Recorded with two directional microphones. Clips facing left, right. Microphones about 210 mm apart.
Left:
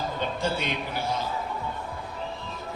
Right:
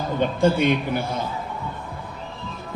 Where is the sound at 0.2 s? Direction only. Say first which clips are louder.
Right 12 dB; 55° right (ahead or behind).